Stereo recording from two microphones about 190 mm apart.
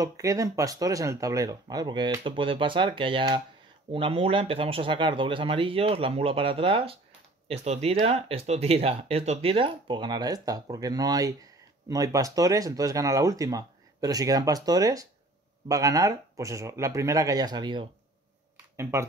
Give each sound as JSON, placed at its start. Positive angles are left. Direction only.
{"t": 0.0, "sound": "speech", "side_deg": -15}